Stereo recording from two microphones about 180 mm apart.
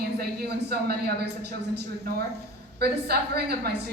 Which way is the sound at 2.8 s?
60° right (ahead or behind).